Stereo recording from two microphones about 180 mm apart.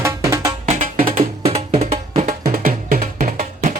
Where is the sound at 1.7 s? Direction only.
35° right (ahead or behind).